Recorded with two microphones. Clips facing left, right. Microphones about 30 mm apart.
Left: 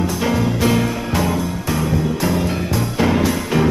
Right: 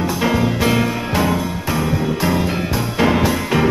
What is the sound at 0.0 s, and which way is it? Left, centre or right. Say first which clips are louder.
Music: right 1 dB; centre.